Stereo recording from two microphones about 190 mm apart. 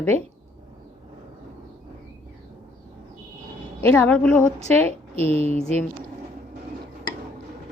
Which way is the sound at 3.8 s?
10° left (ahead or behind).